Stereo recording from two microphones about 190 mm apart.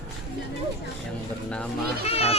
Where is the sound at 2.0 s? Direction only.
30° left (ahead or behind).